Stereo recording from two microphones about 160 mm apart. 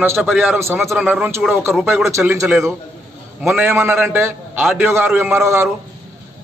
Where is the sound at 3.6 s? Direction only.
15° right (ahead or behind).